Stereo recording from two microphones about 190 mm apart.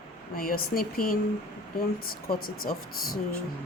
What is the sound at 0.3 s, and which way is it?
Speech, 50° left (ahead or behind).